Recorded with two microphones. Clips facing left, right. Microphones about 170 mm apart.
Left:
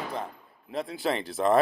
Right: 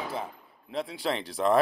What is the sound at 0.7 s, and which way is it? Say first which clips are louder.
Speech: left 1 dB; centre (ahead or behind).